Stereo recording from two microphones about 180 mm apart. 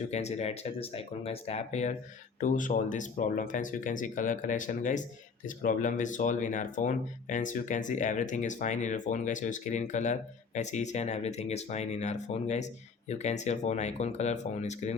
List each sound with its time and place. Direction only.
0.1 s speech: 40° left (ahead or behind)